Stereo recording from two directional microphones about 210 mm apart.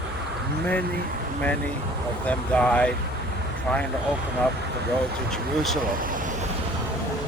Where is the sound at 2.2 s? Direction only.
5° left (ahead or behind).